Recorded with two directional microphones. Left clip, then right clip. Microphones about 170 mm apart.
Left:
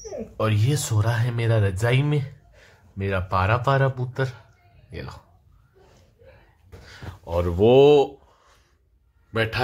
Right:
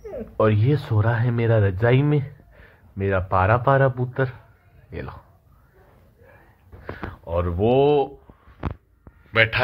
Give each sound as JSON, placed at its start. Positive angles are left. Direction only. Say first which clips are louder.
{"t": 0.4, "sound": "speech", "louder": "right 5 dB", "side_deg": -15}
{"t": 7.2, "sound": "speech", "louder": "even", "side_deg": 35}
{"t": 7.5, "sound": "a man's voice", "louder": "left 4 dB", "side_deg": 55}